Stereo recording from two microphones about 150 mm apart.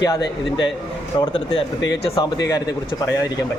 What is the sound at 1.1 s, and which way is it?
A man's voice, 30° left (ahead or behind).